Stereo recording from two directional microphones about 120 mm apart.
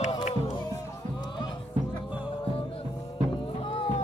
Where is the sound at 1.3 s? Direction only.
35° left (ahead or behind).